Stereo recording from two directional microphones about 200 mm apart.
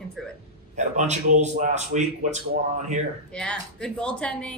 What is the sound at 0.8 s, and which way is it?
Speech, 35° right (ahead or behind).